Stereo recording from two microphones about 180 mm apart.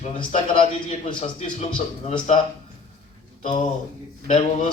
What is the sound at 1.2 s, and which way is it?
A man's voice, 40° left (ahead or behind).